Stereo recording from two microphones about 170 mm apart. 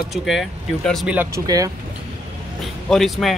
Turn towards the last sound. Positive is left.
turn(degrees=0)  # may be behind; listen again after turning